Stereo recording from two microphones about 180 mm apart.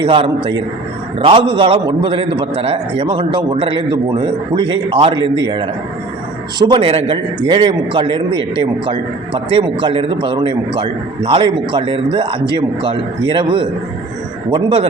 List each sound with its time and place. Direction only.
0.0 s a man's voice: 30° right (ahead or behind)